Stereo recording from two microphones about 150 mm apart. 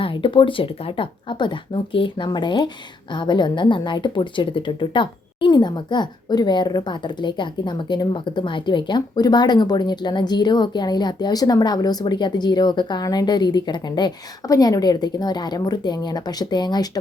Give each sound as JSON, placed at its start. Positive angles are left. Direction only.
{"t": 0.0, "sound": "a woman's voice", "side_deg": 35}